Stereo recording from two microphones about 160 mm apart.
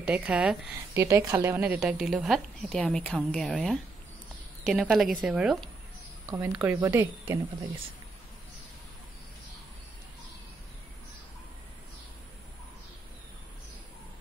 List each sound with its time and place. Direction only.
0.0 s speech: 10° right (ahead or behind)
0.9 s a woman's voice: 20° right (ahead or behind)
6.3 s speech: 15° right (ahead or behind)